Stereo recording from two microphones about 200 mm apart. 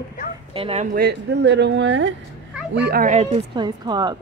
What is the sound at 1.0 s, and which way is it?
Speech, 55° right (ahead or behind).